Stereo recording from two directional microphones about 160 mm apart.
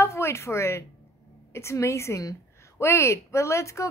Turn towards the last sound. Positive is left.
turn(degrees=20)  # may be behind; listen again after turning